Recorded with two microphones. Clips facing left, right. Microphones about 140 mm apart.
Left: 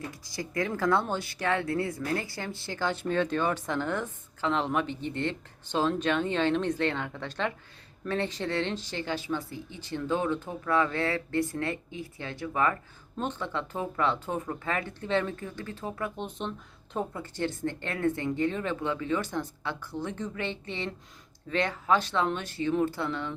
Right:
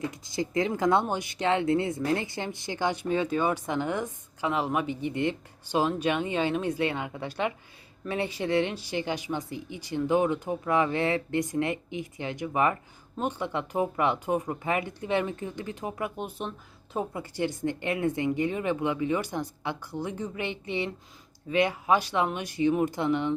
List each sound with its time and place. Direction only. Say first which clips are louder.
0.1 s speech: right 6 dB; 20° right (ahead or behind)